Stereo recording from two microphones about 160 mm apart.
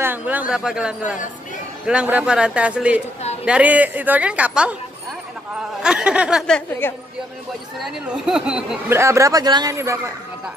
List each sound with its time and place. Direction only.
0.0 s a woman's voice: 10° right (ahead or behind)
5.8 s speech: 5° right (ahead or behind)
6.4 s speech: 5° left (ahead or behind)
8.9 s a man's voice: 20° right (ahead or behind)